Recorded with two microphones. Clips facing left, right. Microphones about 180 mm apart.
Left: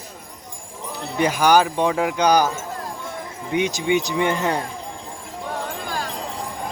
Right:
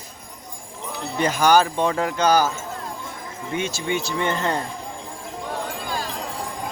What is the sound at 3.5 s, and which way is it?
Speech, 15° left (ahead or behind).